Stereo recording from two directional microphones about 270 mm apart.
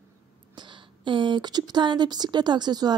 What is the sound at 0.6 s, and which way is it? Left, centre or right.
A woman's voice, centre.